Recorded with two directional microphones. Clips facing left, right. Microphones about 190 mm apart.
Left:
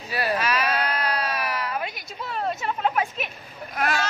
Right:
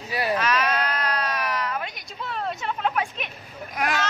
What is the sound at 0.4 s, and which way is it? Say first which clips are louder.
Sheep: right 1 dB; 10° left (ahead or behind).